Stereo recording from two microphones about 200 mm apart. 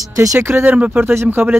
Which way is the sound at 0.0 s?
15° right (ahead or behind).